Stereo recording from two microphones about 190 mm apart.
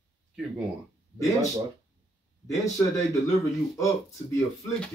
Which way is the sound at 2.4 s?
15° left (ahead or behind).